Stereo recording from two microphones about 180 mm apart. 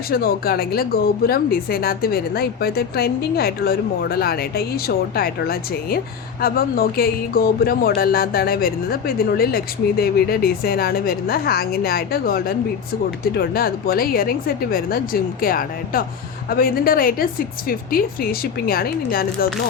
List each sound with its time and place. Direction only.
0.1 s a woman's voice: 55° left (ahead or behind)